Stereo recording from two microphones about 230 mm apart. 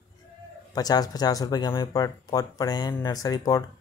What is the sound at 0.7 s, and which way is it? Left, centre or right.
Speech, centre.